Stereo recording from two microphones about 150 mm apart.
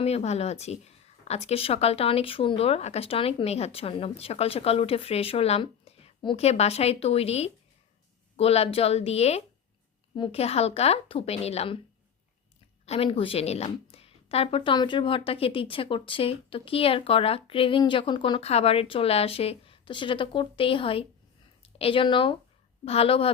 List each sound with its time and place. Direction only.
0.0 s a woman's voice: 45° left (ahead or behind)
12.8 s a woman's voice: 40° left (ahead or behind)